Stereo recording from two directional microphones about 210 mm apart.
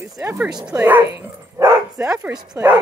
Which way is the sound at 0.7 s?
10° right (ahead or behind).